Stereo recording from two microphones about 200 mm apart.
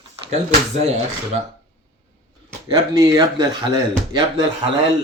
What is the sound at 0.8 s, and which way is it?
Speech, 35° right (ahead or behind).